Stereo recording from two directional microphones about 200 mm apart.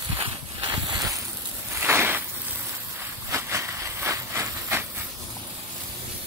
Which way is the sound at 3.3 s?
15° right (ahead or behind).